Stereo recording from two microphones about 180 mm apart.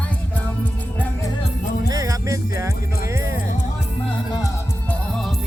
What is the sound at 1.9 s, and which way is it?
Music, 20° right (ahead or behind).